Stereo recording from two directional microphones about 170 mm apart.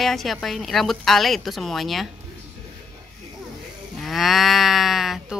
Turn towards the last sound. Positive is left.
turn(degrees=0)  # may be behind; listen again after turning